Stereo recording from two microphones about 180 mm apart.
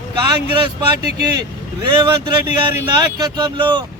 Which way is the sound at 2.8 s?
25° right (ahead or behind).